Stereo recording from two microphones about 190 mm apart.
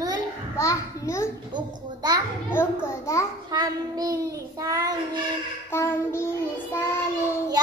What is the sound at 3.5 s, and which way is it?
Child singing, 20° right (ahead or behind).